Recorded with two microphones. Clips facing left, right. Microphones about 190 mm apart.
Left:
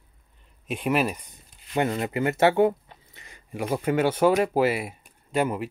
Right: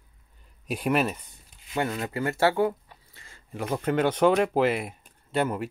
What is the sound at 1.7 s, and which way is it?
Speech, 20° left (ahead or behind).